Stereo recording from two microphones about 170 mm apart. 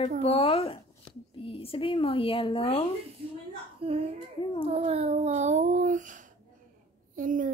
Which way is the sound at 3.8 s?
35° right (ahead or behind).